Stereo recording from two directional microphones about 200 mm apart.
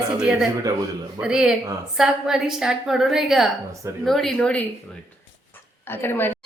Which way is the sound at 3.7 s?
15° right (ahead or behind).